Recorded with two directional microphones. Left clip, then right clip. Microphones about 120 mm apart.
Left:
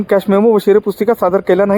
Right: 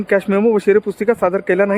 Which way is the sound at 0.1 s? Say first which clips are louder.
Left 4 dB; 30° left (ahead or behind).